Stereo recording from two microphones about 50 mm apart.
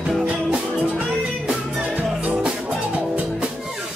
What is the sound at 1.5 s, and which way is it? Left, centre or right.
Music, right.